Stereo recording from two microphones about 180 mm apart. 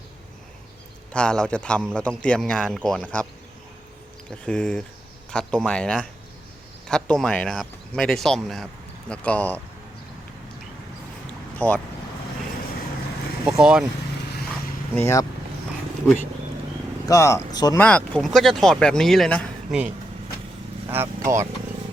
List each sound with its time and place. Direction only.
1.1 s a man's voice: 5° left (ahead or behind)
4.4 s a man's voice: 5° left (ahead or behind)
11.5 s speech: 10° left (ahead or behind)
13.6 s a man's voice: 5° right (ahead or behind)
14.9 s speech: 15° left (ahead or behind)
17.1 s speech: 15° left (ahead or behind)
17.7 s a man's voice: 5° left (ahead or behind)
20.9 s speech: 15° right (ahead or behind)